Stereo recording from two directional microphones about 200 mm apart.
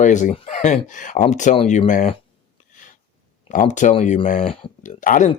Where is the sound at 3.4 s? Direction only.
40° left (ahead or behind).